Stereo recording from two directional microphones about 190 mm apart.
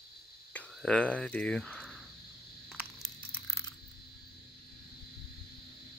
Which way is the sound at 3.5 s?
15° left (ahead or behind).